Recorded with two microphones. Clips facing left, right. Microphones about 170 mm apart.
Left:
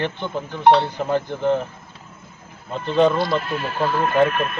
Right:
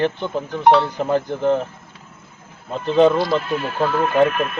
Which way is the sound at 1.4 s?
Centre (ahead or behind).